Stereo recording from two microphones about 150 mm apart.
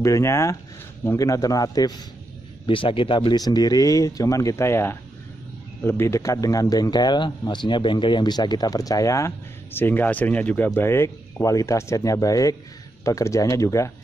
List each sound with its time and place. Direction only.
0.0 s speech: 20° left (ahead or behind)
2.6 s speech: 35° left (ahead or behind); by 13.9 s 20° left (ahead or behind)